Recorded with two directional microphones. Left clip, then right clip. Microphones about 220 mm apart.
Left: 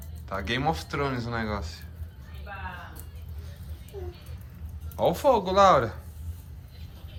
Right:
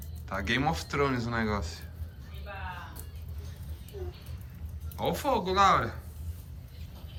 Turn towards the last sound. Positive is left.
turn(degrees=15)  # may be behind; listen again after turning